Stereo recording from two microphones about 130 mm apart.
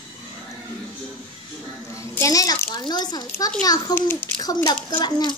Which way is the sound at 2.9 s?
30° left (ahead or behind).